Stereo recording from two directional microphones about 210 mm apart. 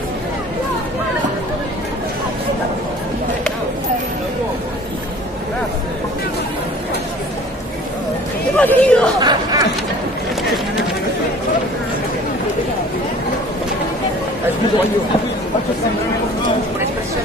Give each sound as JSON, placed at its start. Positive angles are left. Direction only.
{"t": 8.5, "sound": "chatter", "side_deg": 5}
{"t": 9.2, "sound": "chatter", "side_deg": -20}